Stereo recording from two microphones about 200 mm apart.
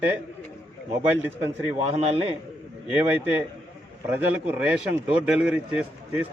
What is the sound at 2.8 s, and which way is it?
Speech, 10° right (ahead or behind).